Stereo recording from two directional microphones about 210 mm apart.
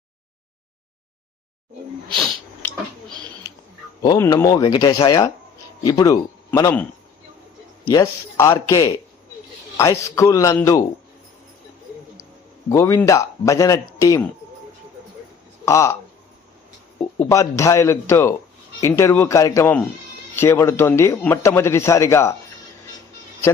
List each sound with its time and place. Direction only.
2.1 s sneeze: centre (ahead or behind)
4.0 s speech: 20° left (ahead or behind)
7.9 s speech: 15° left (ahead or behind)
12.6 s speech: 15° left (ahead or behind)
15.6 s speech: 15° left (ahead or behind)
17.2 s speech: 15° left (ahead or behind)